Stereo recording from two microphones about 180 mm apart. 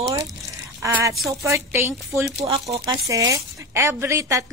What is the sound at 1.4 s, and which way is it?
Speech, 15° right (ahead or behind).